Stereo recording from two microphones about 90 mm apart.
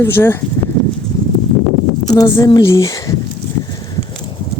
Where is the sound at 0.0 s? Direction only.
25° left (ahead or behind).